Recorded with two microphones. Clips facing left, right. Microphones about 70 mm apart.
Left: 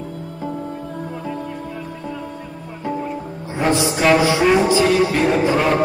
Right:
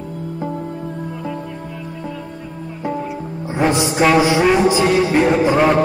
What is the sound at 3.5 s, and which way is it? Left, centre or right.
Music, right.